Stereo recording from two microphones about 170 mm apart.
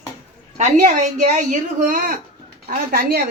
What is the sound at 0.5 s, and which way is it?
Speech, 45° right (ahead or behind).